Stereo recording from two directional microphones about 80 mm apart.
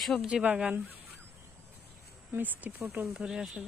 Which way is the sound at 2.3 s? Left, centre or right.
Right.